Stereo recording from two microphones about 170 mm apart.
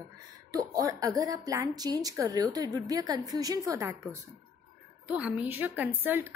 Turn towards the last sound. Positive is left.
turn(degrees=-10)  # may be behind; listen again after turning